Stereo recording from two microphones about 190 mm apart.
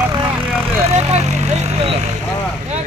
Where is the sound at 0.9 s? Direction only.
35° right (ahead or behind).